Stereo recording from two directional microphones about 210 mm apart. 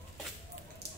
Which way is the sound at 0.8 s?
50° right (ahead or behind).